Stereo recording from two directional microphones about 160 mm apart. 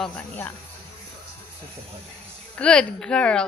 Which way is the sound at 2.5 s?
5° left (ahead or behind).